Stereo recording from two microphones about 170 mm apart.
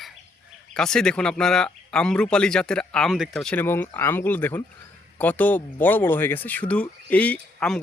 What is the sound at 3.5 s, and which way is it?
Speech, 10° left (ahead or behind).